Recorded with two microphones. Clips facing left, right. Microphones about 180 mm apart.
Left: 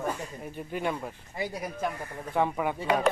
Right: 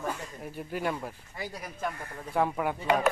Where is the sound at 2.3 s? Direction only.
Centre (ahead or behind).